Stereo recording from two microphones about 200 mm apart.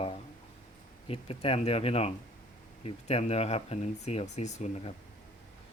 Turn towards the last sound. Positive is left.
turn(degrees=35)  # may be behind; listen again after turning